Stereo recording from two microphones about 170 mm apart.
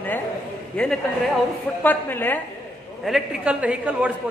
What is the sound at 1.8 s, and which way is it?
Speech, 10° left (ahead or behind).